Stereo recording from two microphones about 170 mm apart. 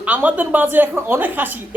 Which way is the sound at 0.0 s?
10° right (ahead or behind).